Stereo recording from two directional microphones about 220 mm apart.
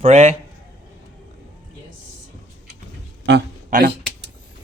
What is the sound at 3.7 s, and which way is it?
Speech, 35° right (ahead or behind).